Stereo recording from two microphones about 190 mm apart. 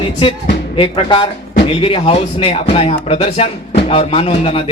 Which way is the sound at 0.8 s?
25° left (ahead or behind).